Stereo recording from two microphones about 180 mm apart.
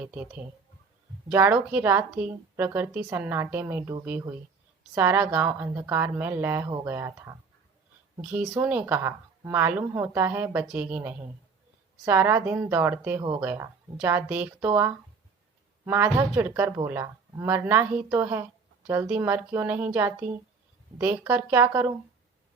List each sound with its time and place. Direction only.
0.0 s a woman's voice: 10° right (ahead or behind)